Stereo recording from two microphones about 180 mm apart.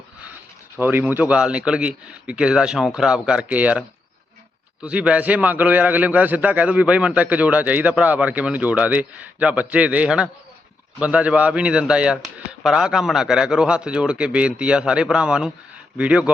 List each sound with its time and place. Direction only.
0.8 s a man's voice: 10° right (ahead or behind)